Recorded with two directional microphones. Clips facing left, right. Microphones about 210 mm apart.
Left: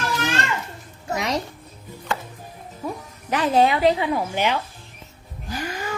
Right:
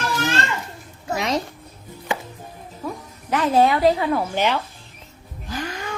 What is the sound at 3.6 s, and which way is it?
A woman's voice, 15° left (ahead or behind).